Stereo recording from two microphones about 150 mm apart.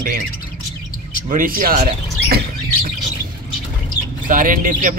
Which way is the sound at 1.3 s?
70° right (ahead or behind).